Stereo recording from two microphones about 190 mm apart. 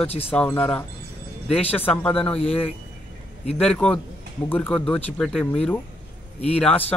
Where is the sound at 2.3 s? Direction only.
30° left (ahead or behind).